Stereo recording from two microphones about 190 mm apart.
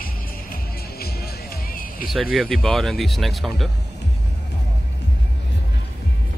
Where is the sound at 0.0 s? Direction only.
50° left (ahead or behind).